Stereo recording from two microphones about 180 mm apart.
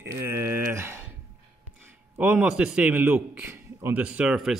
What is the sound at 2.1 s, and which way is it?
Speech, 5° right (ahead or behind).